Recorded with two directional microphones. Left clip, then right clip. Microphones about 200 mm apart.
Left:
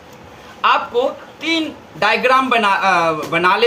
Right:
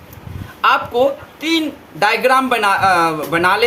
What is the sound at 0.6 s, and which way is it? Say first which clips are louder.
Speech: right 2 dB; 50° right (ahead or behind).